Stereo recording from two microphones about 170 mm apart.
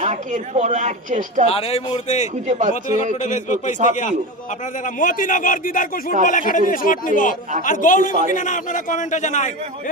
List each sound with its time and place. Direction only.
0.0 s a woman's voice: 45° right (ahead or behind)
1.5 s speech: 35° left (ahead or behind)
2.5 s a woman's voice: 45° right (ahead or behind)
3.2 s a man's voice: 45° left (ahead or behind)
4.9 s a man's voice: 50° left (ahead or behind)